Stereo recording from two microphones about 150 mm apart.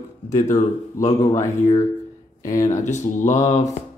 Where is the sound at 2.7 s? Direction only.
55° left (ahead or behind).